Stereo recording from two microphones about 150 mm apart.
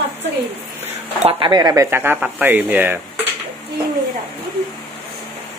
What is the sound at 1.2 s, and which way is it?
Speech, 35° right (ahead or behind).